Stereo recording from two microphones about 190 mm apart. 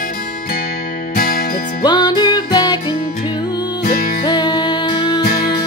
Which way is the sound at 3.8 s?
50° left (ahead or behind).